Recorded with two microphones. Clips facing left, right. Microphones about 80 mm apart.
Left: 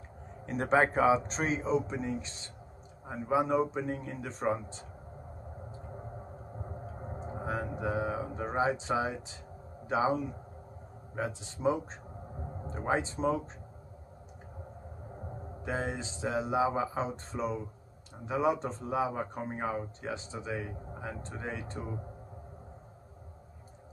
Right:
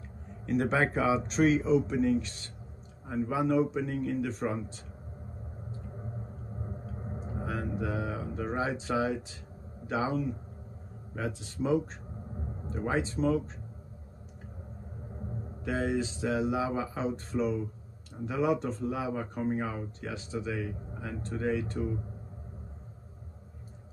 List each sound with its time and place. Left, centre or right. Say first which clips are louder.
0.5 s speech: left 1 dB; left
6.9 s mantra: even; left
8.5 s speech: left 2 dB; left
15.6 s speech: right 5 dB; left